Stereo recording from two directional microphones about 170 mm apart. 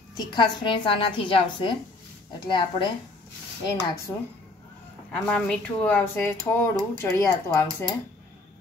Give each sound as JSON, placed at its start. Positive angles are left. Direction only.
{"t": 0.2, "sound": "a woman's voice", "side_deg": 25}
{"t": 5.1, "sound": "speech", "side_deg": 5}